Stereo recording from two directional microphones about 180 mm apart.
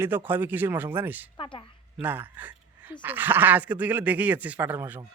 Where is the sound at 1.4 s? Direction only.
25° left (ahead or behind).